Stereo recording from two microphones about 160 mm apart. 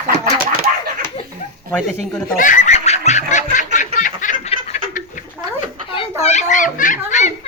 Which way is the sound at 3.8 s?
55° left (ahead or behind).